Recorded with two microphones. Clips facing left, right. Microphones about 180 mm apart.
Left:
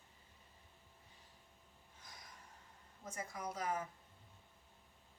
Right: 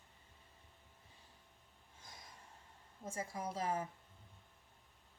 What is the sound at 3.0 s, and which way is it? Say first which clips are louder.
Speech: right 3 dB; 30° right (ahead or behind).